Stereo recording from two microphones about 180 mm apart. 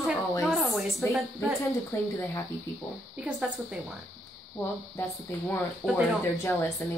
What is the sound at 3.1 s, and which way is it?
Speech, 5° right (ahead or behind).